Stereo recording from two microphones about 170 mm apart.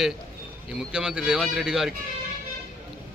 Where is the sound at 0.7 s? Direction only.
5° right (ahead or behind).